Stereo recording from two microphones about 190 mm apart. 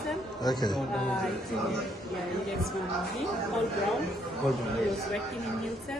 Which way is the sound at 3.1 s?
Centre (ahead or behind).